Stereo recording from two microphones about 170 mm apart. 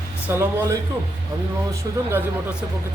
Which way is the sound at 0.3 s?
15° right (ahead or behind).